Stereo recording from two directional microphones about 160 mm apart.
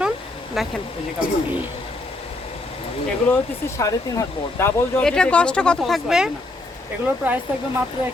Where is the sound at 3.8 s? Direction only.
20° left (ahead or behind).